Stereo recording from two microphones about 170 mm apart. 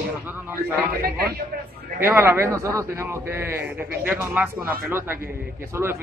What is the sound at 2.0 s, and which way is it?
A man's voice, 15° right (ahead or behind).